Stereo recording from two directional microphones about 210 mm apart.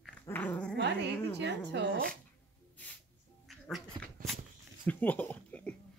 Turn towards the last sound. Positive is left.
turn(degrees=5)  # may be behind; listen again after turning